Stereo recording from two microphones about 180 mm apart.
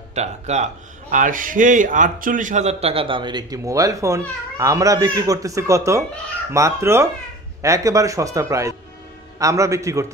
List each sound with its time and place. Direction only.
0.1 s a man's voice: 40° right (ahead or behind); by 10.1 s 15° right (ahead or behind)